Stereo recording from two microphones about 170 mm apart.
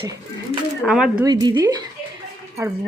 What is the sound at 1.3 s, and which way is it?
Speech, 20° right (ahead or behind).